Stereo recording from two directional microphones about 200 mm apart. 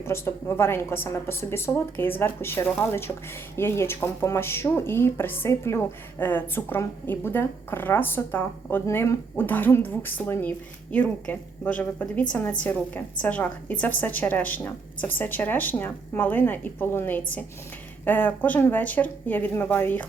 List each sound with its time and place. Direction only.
0.0 s speech: 15° left (ahead or behind)
13.2 s speech: 10° left (ahead or behind)